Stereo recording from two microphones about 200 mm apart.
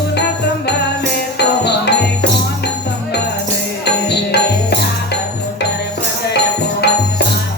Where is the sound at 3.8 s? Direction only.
55° left (ahead or behind).